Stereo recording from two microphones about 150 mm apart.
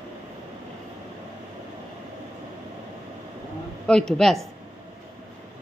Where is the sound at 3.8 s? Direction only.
5° left (ahead or behind).